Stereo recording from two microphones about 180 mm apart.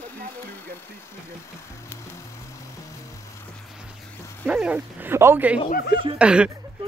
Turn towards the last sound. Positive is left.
turn(degrees=-5)  # may be behind; listen again after turning